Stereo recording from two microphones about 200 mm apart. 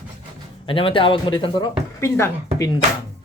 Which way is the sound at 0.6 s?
25° left (ahead or behind).